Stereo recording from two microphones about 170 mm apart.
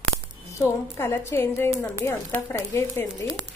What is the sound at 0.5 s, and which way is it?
A woman's voice, 15° left (ahead or behind).